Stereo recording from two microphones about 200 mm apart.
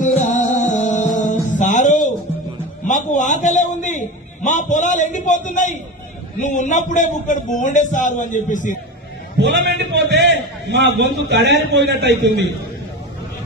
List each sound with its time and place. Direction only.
0.0 s music: 40° left (ahead or behind)
2.9 s a sound: 40° left (ahead or behind)
6.4 s a man's voice: 40° left (ahead or behind)
9.4 s a man's voice: 60° right (ahead or behind)